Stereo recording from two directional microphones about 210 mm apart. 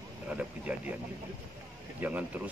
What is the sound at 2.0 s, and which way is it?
Speech, 5° right (ahead or behind).